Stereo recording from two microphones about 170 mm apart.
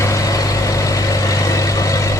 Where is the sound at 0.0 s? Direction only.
20° left (ahead or behind).